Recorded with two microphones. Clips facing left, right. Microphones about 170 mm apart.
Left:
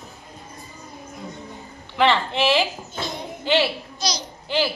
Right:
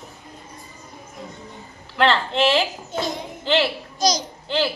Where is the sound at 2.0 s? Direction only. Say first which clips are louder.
Right 1 dB; centre (ahead or behind).